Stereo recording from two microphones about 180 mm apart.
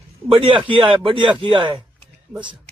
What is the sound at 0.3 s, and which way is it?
A man's voice, 30° right (ahead or behind).